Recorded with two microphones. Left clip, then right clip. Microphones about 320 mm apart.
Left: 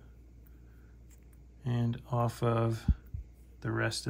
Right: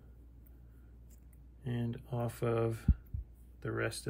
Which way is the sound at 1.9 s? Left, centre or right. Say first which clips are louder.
Left 9 dB; centre.